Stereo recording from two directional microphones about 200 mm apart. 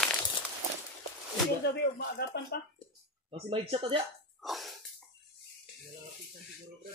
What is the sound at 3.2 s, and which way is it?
Speech, 30° right (ahead or behind).